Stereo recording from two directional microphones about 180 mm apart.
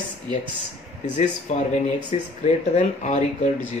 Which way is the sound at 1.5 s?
40° left (ahead or behind).